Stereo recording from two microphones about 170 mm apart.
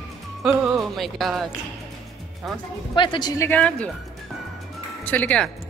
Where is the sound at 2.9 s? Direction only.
30° left (ahead or behind).